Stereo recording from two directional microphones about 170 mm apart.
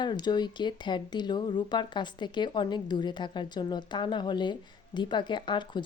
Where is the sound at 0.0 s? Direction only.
25° left (ahead or behind).